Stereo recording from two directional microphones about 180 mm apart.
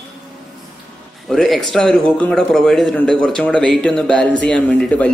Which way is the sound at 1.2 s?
Centre (ahead or behind).